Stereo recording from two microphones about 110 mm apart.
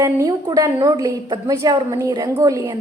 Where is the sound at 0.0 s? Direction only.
30° right (ahead or behind).